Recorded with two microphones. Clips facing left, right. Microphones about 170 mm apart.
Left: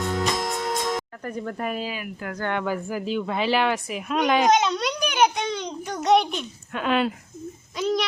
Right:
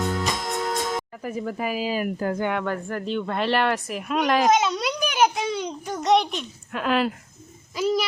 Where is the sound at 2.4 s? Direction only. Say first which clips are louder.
Right 1 dB; centre (ahead or behind).